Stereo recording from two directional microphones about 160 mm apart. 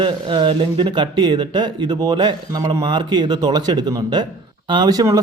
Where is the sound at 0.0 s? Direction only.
30° right (ahead or behind).